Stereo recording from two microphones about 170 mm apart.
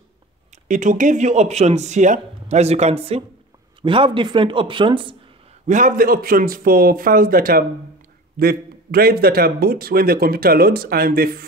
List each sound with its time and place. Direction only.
0.7 s speech: 50° right (ahead or behind); by 5.1 s 30° right (ahead or behind)
5.7 s a man's voice: 50° right (ahead or behind)